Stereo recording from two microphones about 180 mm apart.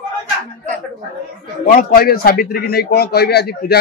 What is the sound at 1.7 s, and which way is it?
A man's voice, 55° left (ahead or behind).